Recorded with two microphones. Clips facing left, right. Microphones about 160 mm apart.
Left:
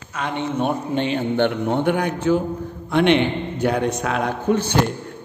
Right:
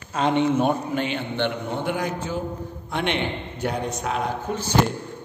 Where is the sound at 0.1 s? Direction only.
25° right (ahead or behind).